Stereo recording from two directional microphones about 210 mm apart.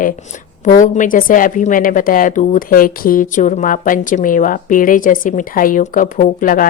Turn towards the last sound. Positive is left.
turn(degrees=40)  # may be behind; listen again after turning